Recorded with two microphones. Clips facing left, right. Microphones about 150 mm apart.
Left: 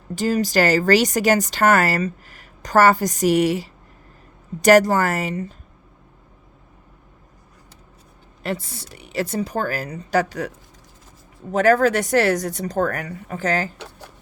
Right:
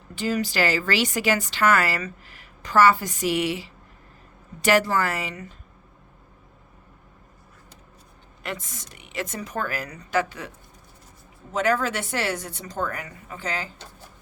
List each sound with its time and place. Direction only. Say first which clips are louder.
0.2 s a woman's voice: left 5 dB; 40° left (ahead or behind)
8.4 s a woman's voice: left 7 dB; 35° left (ahead or behind)
11.5 s a woman's voice: left 7 dB; 45° left (ahead or behind)
13.7 s a sound: left 7 dB; 70° left (ahead or behind)